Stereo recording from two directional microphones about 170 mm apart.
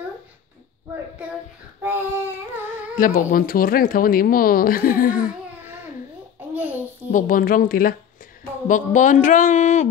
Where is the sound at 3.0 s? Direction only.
60° left (ahead or behind).